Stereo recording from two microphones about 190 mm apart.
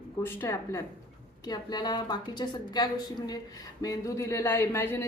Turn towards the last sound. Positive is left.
turn(degrees=10)  # may be behind; listen again after turning